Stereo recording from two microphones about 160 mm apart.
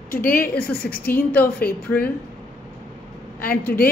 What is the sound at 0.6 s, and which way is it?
Speech, 10° left (ahead or behind).